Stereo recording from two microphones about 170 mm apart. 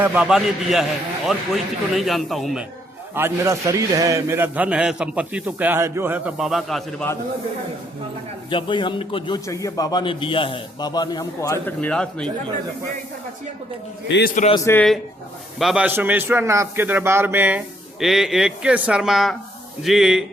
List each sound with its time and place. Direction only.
0.0 s speech: 10° right (ahead or behind)
3.2 s a man's voice: 15° right (ahead or behind); by 7.1 s centre (ahead or behind)
8.4 s a man's voice: 30° left (ahead or behind); by 12.3 s 5° left (ahead or behind)
14.5 s speech: 15° left (ahead or behind)
15.5 s a man's voice: 5° right (ahead or behind)